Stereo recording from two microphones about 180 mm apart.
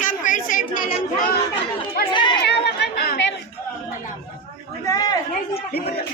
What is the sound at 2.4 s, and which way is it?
Chatter, 70° left (ahead or behind).